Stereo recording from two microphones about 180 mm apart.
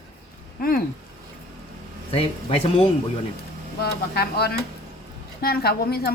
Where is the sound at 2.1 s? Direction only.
35° left (ahead or behind).